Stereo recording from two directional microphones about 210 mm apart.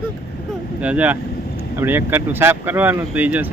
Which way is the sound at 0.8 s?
5° right (ahead or behind).